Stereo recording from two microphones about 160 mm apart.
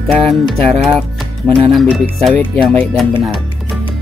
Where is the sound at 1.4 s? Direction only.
5° right (ahead or behind).